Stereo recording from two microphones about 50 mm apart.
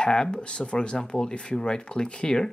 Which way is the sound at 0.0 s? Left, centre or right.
Centre.